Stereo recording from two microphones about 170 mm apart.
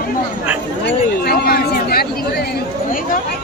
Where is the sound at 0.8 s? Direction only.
70° left (ahead or behind).